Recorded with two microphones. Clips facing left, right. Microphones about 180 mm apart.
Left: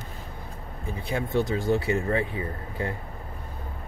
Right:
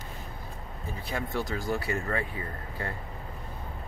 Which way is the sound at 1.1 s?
20° left (ahead or behind).